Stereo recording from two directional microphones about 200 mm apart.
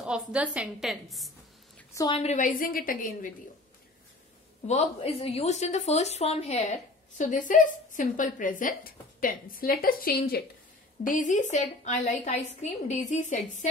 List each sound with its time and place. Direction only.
0.0 s a woman's voice: 5° right (ahead or behind)
2.0 s a woman's voice: 25° left (ahead or behind); by 3.3 s 45° left (ahead or behind)
4.6 s a woman's voice: 30° left (ahead or behind)